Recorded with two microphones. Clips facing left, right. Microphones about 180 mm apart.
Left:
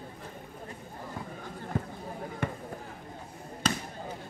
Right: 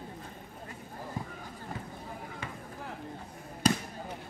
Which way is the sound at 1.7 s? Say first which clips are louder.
Left 7 dB; 55° left (ahead or behind).